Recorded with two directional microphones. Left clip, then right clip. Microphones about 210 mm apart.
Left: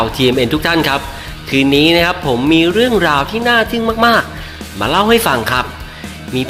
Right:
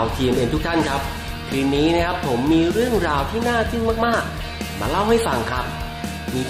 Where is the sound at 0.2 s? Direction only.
20° left (ahead or behind).